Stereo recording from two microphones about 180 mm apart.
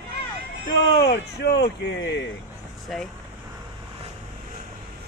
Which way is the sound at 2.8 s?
5° left (ahead or behind).